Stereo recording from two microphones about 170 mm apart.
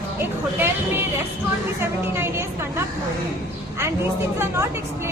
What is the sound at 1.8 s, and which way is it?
A woman's voice, 15° right (ahead or behind).